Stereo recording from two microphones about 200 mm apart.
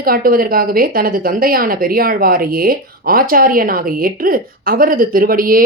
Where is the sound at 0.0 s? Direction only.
45° right (ahead or behind).